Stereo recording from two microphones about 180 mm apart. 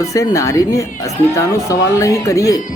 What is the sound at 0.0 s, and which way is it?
Speech, 20° left (ahead or behind).